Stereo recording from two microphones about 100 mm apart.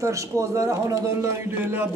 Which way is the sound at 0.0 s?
30° right (ahead or behind).